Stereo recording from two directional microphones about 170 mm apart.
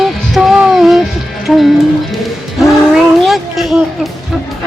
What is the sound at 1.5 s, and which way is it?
Speech, centre (ahead or behind).